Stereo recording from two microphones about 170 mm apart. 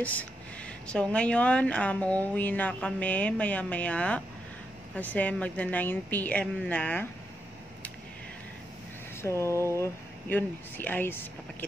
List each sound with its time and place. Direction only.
0.0 s a woman's voice: 10° left (ahead or behind)
9.2 s a woman's voice: 15° left (ahead or behind)